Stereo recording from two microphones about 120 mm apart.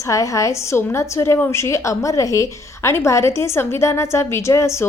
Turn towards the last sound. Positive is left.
turn(degrees=25)  # may be behind; listen again after turning